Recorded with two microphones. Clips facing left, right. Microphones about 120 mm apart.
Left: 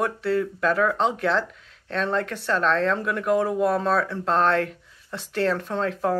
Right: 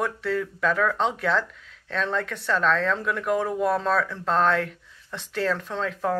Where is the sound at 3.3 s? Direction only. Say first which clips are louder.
Left 3 dB; 5° left (ahead or behind).